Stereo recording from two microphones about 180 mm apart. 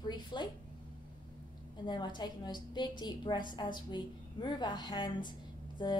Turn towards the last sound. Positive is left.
turn(degrees=25)  # may be behind; listen again after turning